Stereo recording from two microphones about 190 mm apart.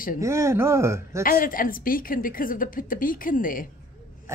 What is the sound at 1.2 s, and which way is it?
Speech, 45° left (ahead or behind).